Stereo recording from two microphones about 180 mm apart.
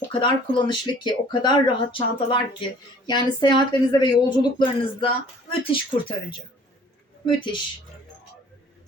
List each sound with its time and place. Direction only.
0.1 s speech: 25° left (ahead or behind)